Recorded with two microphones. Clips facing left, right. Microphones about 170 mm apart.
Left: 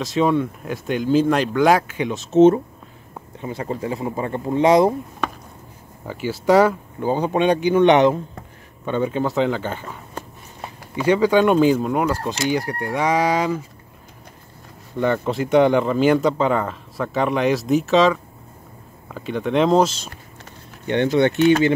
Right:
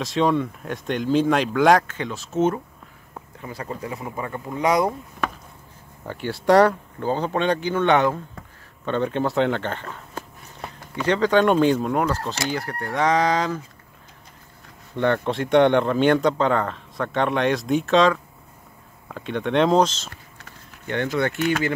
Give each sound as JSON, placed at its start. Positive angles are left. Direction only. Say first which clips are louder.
{"t": 0.0, "sound": "speech", "louder": "left 2 dB", "side_deg": 0}
{"t": 6.0, "sound": "speech", "louder": "left 1 dB", "side_deg": 5}
{"t": 7.0, "sound": "speech", "louder": "left 4 dB", "side_deg": 15}
{"t": 8.8, "sound": "speech", "louder": "left 1 dB", "side_deg": 5}
{"t": 11.0, "sound": "speech", "louder": "left 3 dB", "side_deg": 10}
{"t": 15.0, "sound": "speech", "louder": "left 1 dB", "side_deg": 5}
{"t": 20.8, "sound": "speech", "louder": "left 6 dB", "side_deg": 20}